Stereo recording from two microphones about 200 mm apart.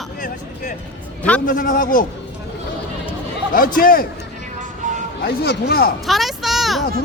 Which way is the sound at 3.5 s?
45° left (ahead or behind).